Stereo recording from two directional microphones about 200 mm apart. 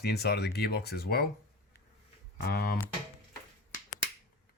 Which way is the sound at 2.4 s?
55° left (ahead or behind).